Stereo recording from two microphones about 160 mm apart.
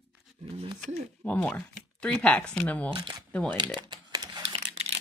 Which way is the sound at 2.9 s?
30° right (ahead or behind).